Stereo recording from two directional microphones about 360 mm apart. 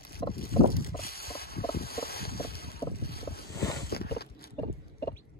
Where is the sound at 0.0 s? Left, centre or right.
Left.